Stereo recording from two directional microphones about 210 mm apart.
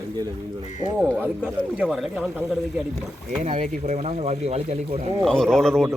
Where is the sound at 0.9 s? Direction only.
10° right (ahead or behind).